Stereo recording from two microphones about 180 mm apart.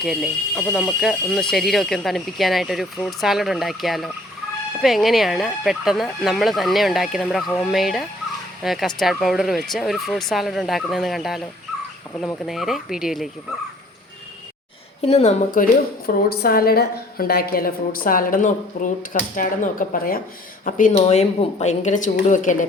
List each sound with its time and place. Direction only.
0.0 s speech: centre (ahead or behind)
15.0 s a woman's voice: 35° left (ahead or behind)
16.0 s a woman's voice: 55° left (ahead or behind)